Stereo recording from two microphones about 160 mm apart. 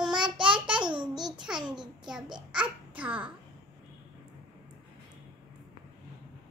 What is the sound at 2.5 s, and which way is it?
Babbling, 10° right (ahead or behind).